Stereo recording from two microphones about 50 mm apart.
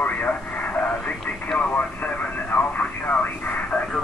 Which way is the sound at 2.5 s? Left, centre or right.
Left.